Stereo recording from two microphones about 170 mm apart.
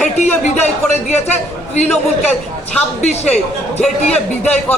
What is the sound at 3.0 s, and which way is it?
Speech, 40° left (ahead or behind).